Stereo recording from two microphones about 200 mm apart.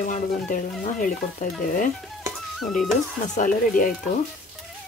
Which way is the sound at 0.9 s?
40° left (ahead or behind).